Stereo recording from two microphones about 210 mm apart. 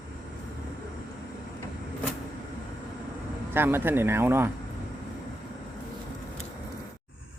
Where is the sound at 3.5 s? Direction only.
10° right (ahead or behind).